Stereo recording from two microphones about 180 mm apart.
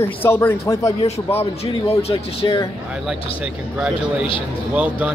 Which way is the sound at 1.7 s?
30° left (ahead or behind).